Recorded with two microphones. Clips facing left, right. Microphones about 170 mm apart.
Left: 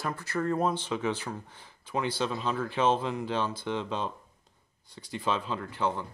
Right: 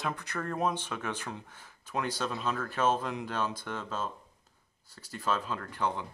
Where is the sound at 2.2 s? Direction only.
5° right (ahead or behind).